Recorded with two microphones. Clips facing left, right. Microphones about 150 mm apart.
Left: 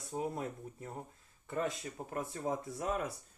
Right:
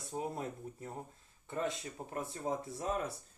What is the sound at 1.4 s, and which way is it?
Speech, 25° right (ahead or behind).